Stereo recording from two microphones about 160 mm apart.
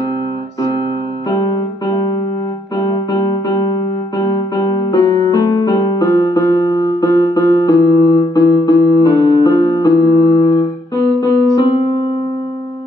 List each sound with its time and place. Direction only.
3.1 s music: 25° left (ahead or behind)
11.1 s keyboard: 25° left (ahead or behind)
11.7 s music: 35° left (ahead or behind)